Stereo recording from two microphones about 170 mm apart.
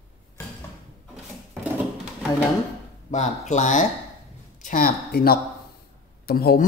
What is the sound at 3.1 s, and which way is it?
A woman's voice, 45° left (ahead or behind).